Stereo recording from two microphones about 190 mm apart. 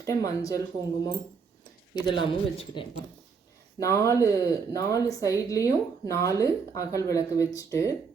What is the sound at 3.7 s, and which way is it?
A woman's voice, 15° left (ahead or behind).